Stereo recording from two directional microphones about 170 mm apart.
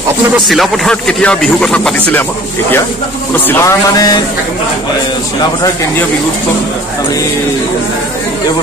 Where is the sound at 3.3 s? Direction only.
10° left (ahead or behind).